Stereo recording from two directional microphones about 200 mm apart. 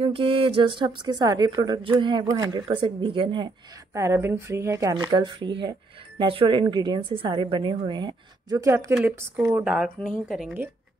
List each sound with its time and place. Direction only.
0.0 s a woman's voice: 25° right (ahead or behind)
8.6 s a woman's voice: 15° right (ahead or behind)